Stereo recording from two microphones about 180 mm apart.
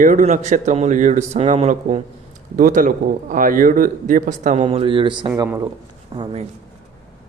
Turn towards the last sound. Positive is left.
turn(degrees=-30)  # may be behind; listen again after turning